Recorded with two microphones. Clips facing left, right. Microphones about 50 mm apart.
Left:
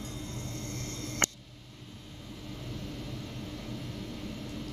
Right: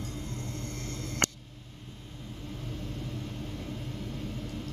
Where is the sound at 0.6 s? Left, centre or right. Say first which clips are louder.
Right 1 dB; right.